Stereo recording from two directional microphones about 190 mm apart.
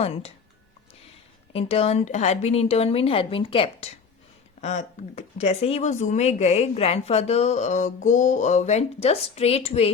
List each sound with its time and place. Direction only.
0.0 s speech: 30° left (ahead or behind)
1.5 s speech: 30° left (ahead or behind)